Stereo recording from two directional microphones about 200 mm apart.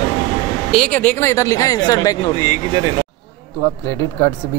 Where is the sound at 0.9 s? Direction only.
10° left (ahead or behind).